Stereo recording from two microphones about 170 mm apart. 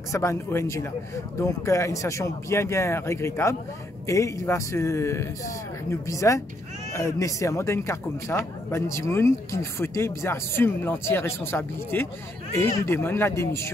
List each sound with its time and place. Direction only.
0.1 s speech: 15° left (ahead or behind)